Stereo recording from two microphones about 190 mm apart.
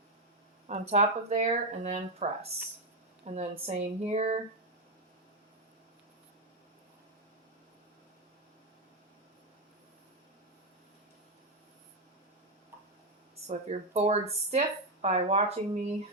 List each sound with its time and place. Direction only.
0.7 s speech: 35° right (ahead or behind)
13.5 s speech: 35° right (ahead or behind)